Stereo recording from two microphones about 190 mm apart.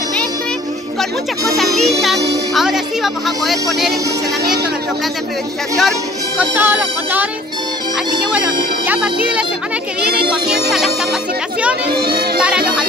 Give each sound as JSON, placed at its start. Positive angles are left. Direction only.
{"t": 2.0, "sound": "speech", "side_deg": 0}
{"t": 5.8, "sound": "speech", "side_deg": -5}
{"t": 8.8, "sound": "speech", "side_deg": -5}
{"t": 10.5, "sound": "speech", "side_deg": 0}
{"t": 12.0, "sound": "music", "side_deg": -55}
{"t": 12.4, "sound": "music", "side_deg": -5}